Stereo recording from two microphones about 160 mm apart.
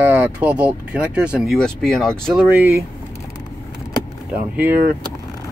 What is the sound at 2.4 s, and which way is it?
Speech, 10° right (ahead or behind).